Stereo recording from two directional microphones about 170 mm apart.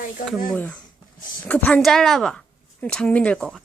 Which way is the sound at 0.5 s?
10° left (ahead or behind).